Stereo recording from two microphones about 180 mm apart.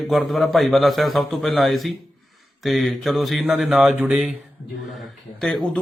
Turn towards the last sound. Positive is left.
turn(degrees=5)  # may be behind; listen again after turning